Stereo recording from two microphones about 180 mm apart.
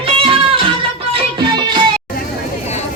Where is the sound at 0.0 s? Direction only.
30° right (ahead or behind).